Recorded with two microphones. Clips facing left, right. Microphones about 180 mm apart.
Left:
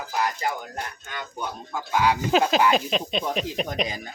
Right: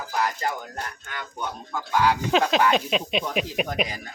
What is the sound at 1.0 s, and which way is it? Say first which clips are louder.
Speech: even; 20° left (ahead or behind).